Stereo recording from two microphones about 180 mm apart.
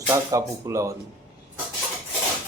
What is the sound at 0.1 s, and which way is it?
Speech, 20° right (ahead or behind).